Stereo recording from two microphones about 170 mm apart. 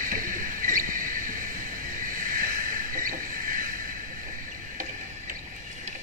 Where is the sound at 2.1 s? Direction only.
55° right (ahead or behind).